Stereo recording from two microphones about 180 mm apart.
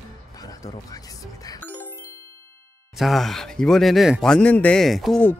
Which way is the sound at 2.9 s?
Centre (ahead or behind).